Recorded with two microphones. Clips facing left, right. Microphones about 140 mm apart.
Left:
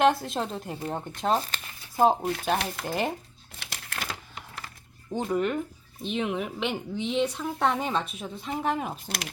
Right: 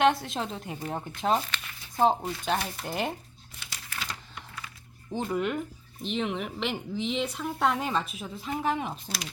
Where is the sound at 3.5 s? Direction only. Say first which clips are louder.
Left 3 dB; 70° left (ahead or behind).